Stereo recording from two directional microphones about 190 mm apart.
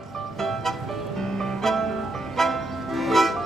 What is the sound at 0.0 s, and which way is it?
Music, centre (ahead or behind).